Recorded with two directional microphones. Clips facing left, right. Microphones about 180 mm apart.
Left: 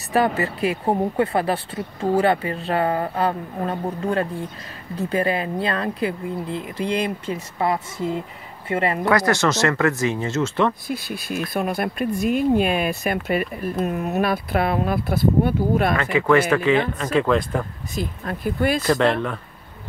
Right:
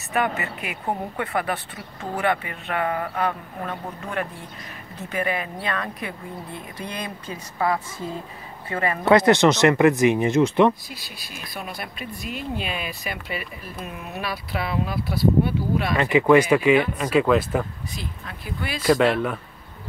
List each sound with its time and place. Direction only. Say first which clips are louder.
0.1 s speech: left 5 dB; 35° left (ahead or behind)
9.0 s speech: right 6 dB; 20° right (ahead or behind)
10.9 s speech: left 13 dB; 50° left (ahead or behind)
16.0 s speech: right 2 dB; 20° right (ahead or behind)
17.9 s speech: left 12 dB; 50° left (ahead or behind)
18.9 s speech: even; 5° right (ahead or behind)